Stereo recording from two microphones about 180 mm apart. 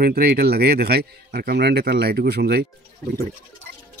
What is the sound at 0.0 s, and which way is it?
Speech, 60° right (ahead or behind).